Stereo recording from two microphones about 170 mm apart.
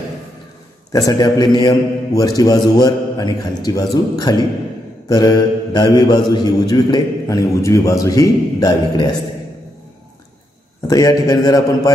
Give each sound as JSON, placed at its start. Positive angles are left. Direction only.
{"t": 0.9, "sound": "a man's voice", "side_deg": 20}
{"t": 10.9, "sound": "a man's voice", "side_deg": 20}